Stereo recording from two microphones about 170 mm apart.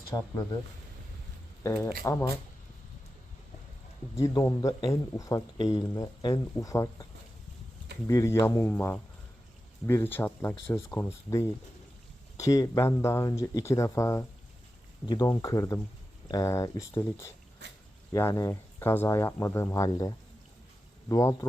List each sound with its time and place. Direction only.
0.1 s a man's voice: 25° left (ahead or behind)
1.6 s speech: 20° left (ahead or behind)
4.1 s a man's voice: 20° left (ahead or behind)